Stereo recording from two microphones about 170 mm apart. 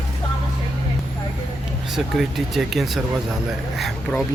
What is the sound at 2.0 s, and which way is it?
Speech, centre (ahead or behind).